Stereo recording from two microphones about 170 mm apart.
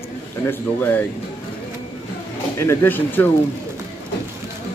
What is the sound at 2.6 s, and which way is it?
Speech, 15° left (ahead or behind).